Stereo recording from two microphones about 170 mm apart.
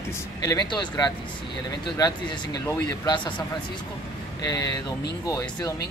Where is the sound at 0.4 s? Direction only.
20° left (ahead or behind).